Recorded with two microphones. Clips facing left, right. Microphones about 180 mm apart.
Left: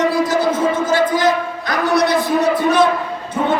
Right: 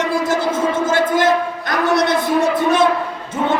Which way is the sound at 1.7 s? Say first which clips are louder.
Left 1 dB; 50° right (ahead or behind).